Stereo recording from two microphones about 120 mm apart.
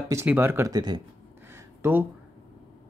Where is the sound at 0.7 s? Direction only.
35° right (ahead or behind).